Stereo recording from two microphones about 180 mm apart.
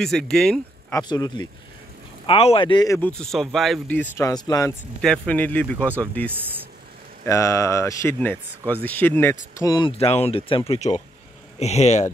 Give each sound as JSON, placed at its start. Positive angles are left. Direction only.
{"t": 0.0, "sound": "speech", "side_deg": 0}
{"t": 0.9, "sound": "speech", "side_deg": 20}
{"t": 3.1, "sound": "speech", "side_deg": 0}
{"t": 5.0, "sound": "speech", "side_deg": 5}
{"t": 9.6, "sound": "speech", "side_deg": 25}